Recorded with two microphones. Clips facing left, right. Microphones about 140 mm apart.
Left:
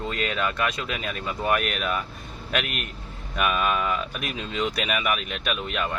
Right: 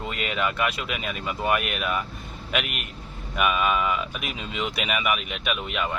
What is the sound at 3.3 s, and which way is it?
Speech, 5° right (ahead or behind).